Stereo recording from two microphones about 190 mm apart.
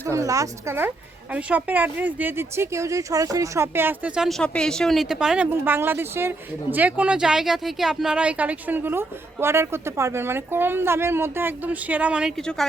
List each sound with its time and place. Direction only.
0.0 s a woman's voice: 15° right (ahead or behind); by 12.6 s centre (ahead or behind)